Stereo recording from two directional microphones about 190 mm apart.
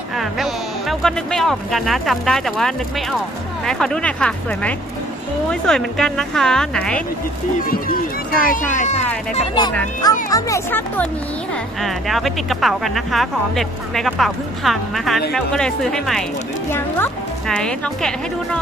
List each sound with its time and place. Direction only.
0.2 s speech: centre (ahead or behind)
7.9 s speech: 50° left (ahead or behind)
10.3 s speech: 15° left (ahead or behind)
11.8 s speech: centre (ahead or behind)